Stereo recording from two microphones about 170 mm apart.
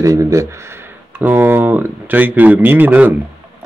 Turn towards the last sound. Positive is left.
turn(degrees=-10)  # may be behind; listen again after turning